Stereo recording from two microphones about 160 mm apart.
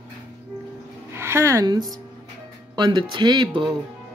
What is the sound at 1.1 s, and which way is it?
Speech, 15° right (ahead or behind).